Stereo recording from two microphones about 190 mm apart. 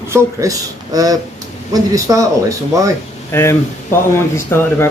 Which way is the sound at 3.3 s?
15° left (ahead or behind).